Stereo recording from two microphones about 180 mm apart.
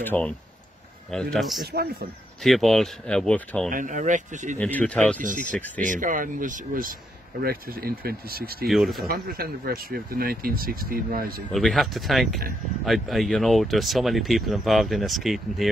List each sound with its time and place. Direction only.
0.0 s speech: 10° left (ahead or behind)
1.7 s speech: 60° right (ahead or behind)
2.4 s speech: centre (ahead or behind)
3.7 s speech: 45° right (ahead or behind)
4.6 s speech: 10° left (ahead or behind)
5.2 s speech: 45° right (ahead or behind)
8.6 s speech: centre (ahead or behind)
9.0 s speech: 55° right (ahead or behind)
11.5 s speech: centre (ahead or behind)